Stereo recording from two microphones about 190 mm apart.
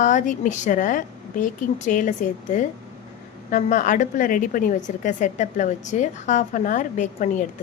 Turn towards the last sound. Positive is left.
turn(degrees=40)  # may be behind; listen again after turning